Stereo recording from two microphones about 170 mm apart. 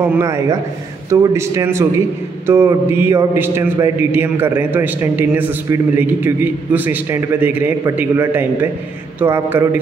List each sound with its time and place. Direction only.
0.0 s a man's voice: 15° right (ahead or behind)